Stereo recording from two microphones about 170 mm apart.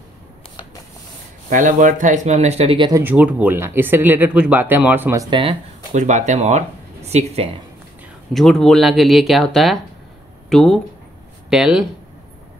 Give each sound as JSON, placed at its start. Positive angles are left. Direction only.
{"t": 1.5, "sound": "speech", "side_deg": -50}
{"t": 2.9, "sound": "speech", "side_deg": -10}
{"t": 5.9, "sound": "speech", "side_deg": -45}
{"t": 8.3, "sound": "speech", "side_deg": 0}